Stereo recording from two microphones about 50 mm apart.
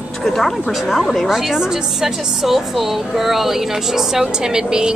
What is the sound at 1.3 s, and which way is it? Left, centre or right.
A woman's voice, centre.